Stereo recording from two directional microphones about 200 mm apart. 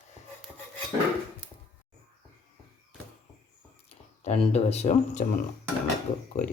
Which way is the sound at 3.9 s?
30° left (ahead or behind).